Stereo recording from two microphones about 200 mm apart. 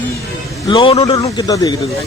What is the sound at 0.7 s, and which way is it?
A man's voice, 25° left (ahead or behind).